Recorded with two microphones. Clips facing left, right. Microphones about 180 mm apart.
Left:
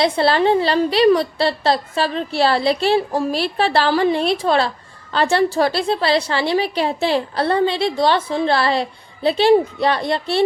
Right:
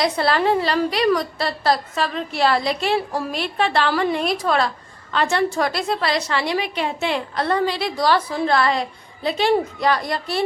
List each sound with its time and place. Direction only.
0.0 s a woman's voice: 30° left (ahead or behind)